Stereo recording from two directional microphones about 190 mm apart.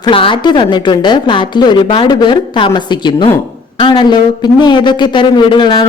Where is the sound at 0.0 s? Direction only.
25° left (ahead or behind).